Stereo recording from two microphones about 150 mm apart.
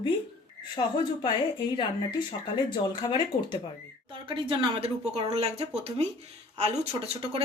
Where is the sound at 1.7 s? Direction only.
30° left (ahead or behind).